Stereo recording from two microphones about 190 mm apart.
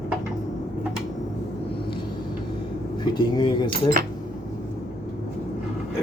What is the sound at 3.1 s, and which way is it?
Cutlery, 25° left (ahead or behind).